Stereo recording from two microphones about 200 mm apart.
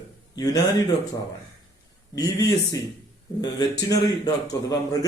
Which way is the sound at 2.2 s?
20° left (ahead or behind).